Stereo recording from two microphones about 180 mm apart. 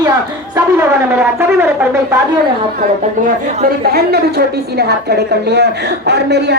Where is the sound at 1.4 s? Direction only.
10° right (ahead or behind).